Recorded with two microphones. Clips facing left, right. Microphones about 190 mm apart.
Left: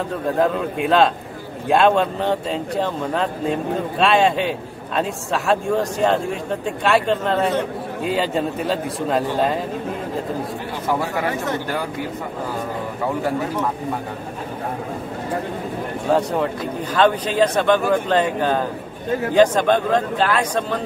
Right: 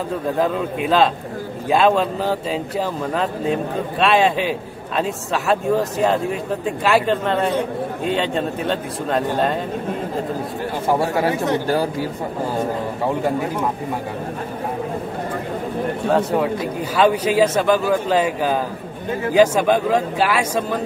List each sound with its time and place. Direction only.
0.4 s a man's voice: centre (ahead or behind)
11.1 s speech: 20° right (ahead or behind)
11.6 s speech: 35° right (ahead or behind)
16.1 s a man's voice: centre (ahead or behind)